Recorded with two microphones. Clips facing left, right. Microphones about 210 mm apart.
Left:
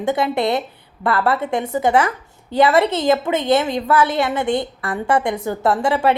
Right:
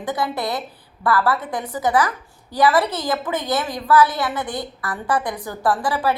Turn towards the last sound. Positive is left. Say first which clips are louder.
# left 4 dB
turn(degrees=25)  # may be behind; listen again after turning